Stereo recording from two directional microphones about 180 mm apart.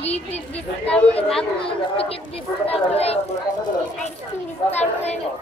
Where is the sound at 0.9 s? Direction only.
5° left (ahead or behind).